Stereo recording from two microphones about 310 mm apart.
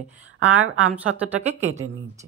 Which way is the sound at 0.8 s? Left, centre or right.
Centre.